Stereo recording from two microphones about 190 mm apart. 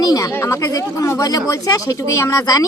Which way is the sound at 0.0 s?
20° left (ahead or behind).